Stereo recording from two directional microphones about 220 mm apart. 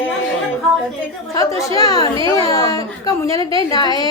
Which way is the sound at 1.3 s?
15° left (ahead or behind).